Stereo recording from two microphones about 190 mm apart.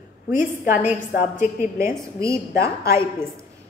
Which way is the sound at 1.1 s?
45° left (ahead or behind).